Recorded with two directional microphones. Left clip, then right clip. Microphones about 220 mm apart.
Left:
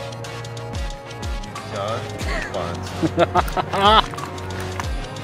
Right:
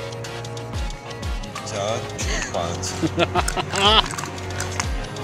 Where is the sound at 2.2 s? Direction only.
5° left (ahead or behind).